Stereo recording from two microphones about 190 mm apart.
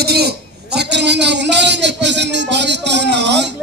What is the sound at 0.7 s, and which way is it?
Music, 65° right (ahead or behind).